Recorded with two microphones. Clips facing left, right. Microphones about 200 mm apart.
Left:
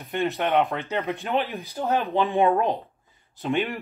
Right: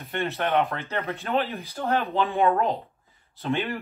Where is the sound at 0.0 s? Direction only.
15° left (ahead or behind).